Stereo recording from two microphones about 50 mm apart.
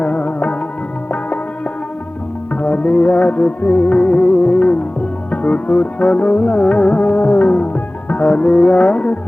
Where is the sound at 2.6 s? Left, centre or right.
Left.